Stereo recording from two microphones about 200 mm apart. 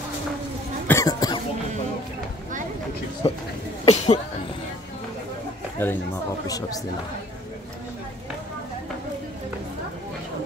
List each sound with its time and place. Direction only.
0.8 s cough: 15° left (ahead or behind)
3.2 s speech: 25° left (ahead or behind)
3.8 s a sound: 35° left (ahead or behind)
5.8 s speech: 10° left (ahead or behind)